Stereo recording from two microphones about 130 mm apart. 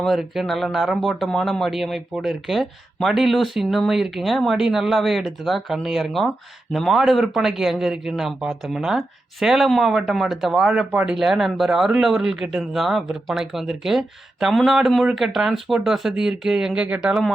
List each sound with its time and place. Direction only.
0.0 s speech: centre (ahead or behind)